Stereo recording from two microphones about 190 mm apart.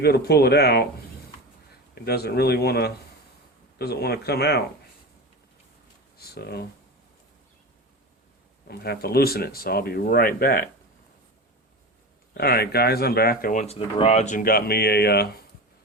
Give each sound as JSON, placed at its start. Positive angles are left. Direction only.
{"t": 0.0, "sound": "speech", "side_deg": 55}
{"t": 2.0, "sound": "speech", "side_deg": 55}
{"t": 6.1, "sound": "speech", "side_deg": 55}
{"t": 8.6, "sound": "speech", "side_deg": 55}
{"t": 12.4, "sound": "speech", "side_deg": 55}